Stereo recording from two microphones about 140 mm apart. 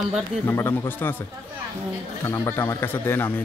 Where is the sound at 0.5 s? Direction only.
15° left (ahead or behind).